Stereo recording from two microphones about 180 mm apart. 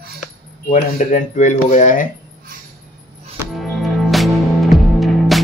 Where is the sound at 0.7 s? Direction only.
45° left (ahead or behind).